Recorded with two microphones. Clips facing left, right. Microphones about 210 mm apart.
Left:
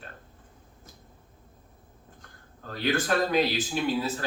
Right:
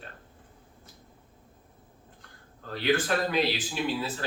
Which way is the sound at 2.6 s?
45° left (ahead or behind).